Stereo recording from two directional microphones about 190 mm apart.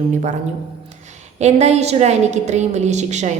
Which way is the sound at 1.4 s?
35° right (ahead or behind).